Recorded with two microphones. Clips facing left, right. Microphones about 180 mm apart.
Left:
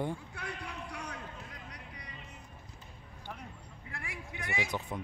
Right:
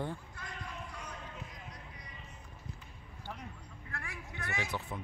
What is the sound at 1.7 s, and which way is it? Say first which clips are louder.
Music: left 2 dB; 70° left (ahead or behind).